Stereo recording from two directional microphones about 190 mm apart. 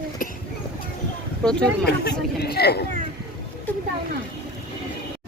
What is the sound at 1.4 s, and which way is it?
Speech, 5° left (ahead or behind).